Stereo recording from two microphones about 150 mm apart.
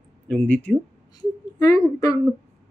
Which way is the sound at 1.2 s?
25° left (ahead or behind).